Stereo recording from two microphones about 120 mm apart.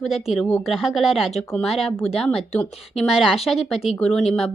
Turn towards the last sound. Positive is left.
turn(degrees=0)  # may be behind; listen again after turning